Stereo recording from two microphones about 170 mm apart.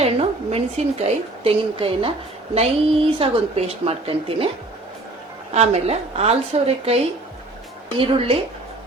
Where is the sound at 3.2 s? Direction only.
35° right (ahead or behind).